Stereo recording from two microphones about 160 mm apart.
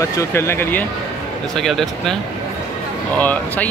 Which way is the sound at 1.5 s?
Centre (ahead or behind).